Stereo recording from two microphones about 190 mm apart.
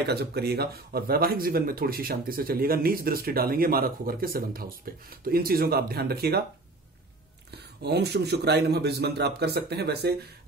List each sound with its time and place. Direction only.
0.0 s speech: 60° right (ahead or behind)
7.8 s a man's voice: 60° right (ahead or behind)